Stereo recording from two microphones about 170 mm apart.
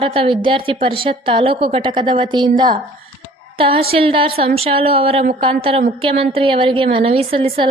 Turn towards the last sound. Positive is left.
turn(degrees=-30)  # may be behind; listen again after turning